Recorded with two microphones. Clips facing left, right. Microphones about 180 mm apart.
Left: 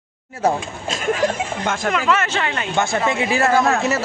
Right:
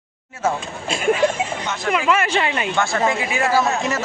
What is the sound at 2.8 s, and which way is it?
Speech, 20° left (ahead or behind).